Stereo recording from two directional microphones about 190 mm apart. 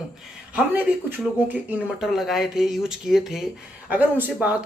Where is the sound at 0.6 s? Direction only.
10° right (ahead or behind).